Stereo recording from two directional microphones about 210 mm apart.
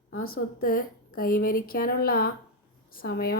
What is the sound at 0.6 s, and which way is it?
A woman's voice, 45° left (ahead or behind).